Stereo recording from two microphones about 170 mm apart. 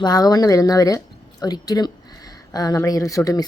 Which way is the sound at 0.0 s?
20° left (ahead or behind).